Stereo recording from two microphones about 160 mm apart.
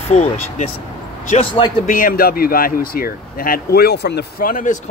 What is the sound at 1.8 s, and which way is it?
Speech, 60° left (ahead or behind).